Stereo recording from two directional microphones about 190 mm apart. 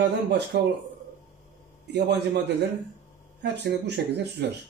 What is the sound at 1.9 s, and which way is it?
Speech, 60° right (ahead or behind).